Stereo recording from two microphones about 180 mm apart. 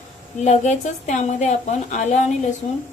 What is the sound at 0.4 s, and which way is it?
A woman's voice, 40° left (ahead or behind).